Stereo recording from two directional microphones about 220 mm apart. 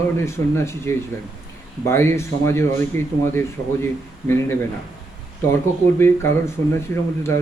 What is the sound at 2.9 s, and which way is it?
Speech, 35° right (ahead or behind).